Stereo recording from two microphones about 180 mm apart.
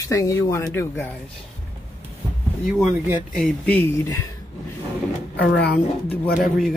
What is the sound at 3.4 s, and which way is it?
Speech, 5° left (ahead or behind).